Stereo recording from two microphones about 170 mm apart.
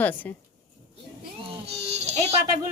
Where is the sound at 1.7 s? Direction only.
40° right (ahead or behind).